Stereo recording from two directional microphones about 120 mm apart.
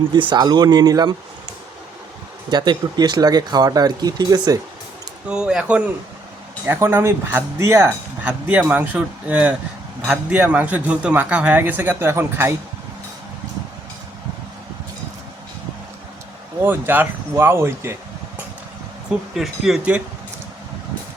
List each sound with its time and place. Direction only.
0.1 s speech: 40° right (ahead or behind)
2.5 s speech: 35° right (ahead or behind)
5.3 s a man's voice: 5° right (ahead or behind)
6.7 s a man's voice: 20° right (ahead or behind)
16.6 s speech: 15° right (ahead or behind)
19.3 s speech: centre (ahead or behind)